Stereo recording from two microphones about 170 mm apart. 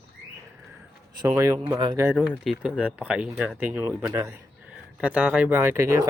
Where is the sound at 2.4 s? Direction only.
5° right (ahead or behind).